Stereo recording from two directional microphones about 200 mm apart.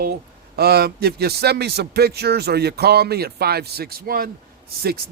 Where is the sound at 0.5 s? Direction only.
50° right (ahead or behind).